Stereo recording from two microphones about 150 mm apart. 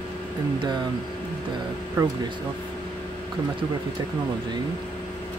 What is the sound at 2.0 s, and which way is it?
Speech, 15° right (ahead or behind).